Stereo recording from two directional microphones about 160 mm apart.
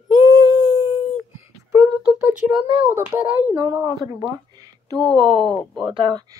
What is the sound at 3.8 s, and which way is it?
Speech, 25° right (ahead or behind).